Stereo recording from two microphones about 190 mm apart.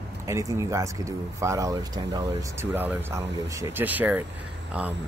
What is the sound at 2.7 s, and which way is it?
Speech, 10° right (ahead or behind).